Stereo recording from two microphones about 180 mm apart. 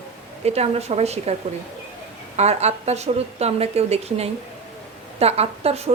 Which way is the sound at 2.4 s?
35° right (ahead or behind).